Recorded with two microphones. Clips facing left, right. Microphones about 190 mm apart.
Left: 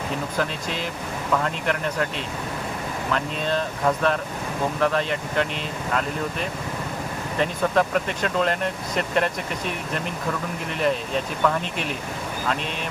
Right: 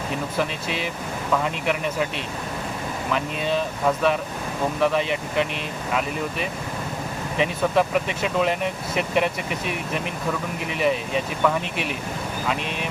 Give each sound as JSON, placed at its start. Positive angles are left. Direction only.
{"t": 1.3, "sound": "speech", "side_deg": -10}
{"t": 3.1, "sound": "speech", "side_deg": -10}